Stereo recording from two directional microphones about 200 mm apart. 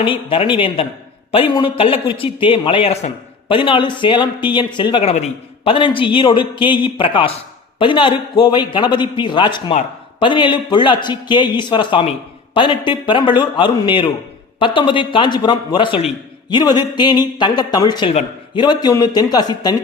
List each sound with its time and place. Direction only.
0.0 s a man's voice: 25° left (ahead or behind)